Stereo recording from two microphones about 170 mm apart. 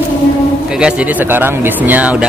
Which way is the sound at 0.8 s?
5° right (ahead or behind).